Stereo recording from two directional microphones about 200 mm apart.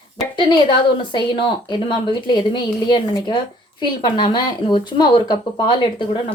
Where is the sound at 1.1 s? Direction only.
25° left (ahead or behind).